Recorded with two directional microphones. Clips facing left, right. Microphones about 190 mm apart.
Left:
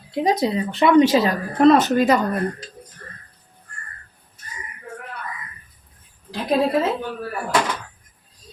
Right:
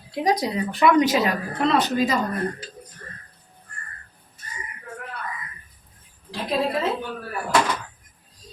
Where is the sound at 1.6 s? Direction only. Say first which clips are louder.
Left 8 dB; 45° left (ahead or behind).